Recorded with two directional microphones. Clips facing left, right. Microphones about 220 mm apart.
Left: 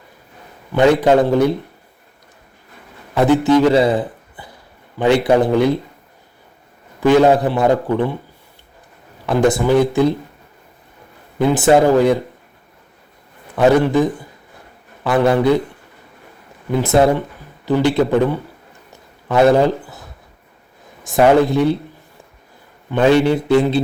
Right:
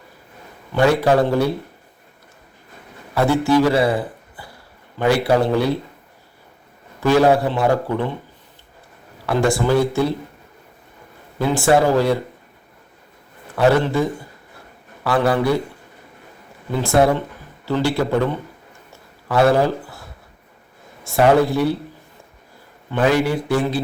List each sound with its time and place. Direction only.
0.7 s a man's voice: 20° left (ahead or behind)
3.2 s a man's voice: 20° left (ahead or behind)
7.0 s a man's voice: 20° left (ahead or behind)
9.2 s speech: 20° left (ahead or behind)
11.3 s a man's voice: 20° left (ahead or behind)
13.6 s a man's voice: 15° left (ahead or behind)
16.8 s a man's voice: 20° left (ahead or behind)
21.0 s a man's voice: 20° left (ahead or behind)
23.0 s a man's voice: 25° left (ahead or behind)